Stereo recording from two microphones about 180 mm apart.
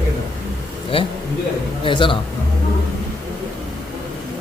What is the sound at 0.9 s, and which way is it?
A man's voice, 30° left (ahead or behind).